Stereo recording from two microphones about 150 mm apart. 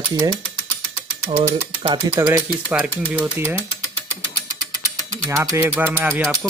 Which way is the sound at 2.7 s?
10° right (ahead or behind).